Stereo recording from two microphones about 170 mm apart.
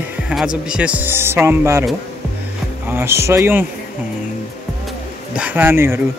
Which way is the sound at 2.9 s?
15° right (ahead or behind).